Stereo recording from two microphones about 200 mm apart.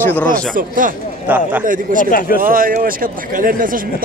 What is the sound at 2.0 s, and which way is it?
Speech, 45° left (ahead or behind).